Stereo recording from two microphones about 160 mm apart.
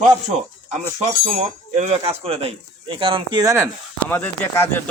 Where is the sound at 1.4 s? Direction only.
45° right (ahead or behind).